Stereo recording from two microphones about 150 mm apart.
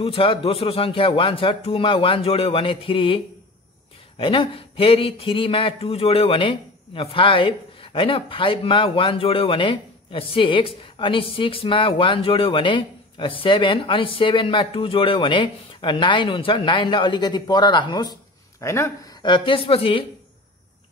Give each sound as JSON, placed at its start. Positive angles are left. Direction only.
{"t": 0.0, "sound": "speech", "side_deg": 35}
{"t": 4.2, "sound": "speech", "side_deg": 35}
{"t": 18.6, "sound": "a man's voice", "side_deg": 20}
{"t": 19.2, "sound": "speech", "side_deg": 35}